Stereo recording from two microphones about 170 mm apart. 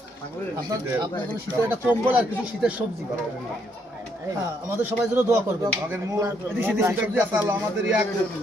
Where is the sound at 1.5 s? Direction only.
15° right (ahead or behind).